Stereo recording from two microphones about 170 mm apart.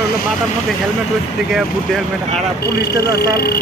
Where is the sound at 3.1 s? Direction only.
65° left (ahead or behind).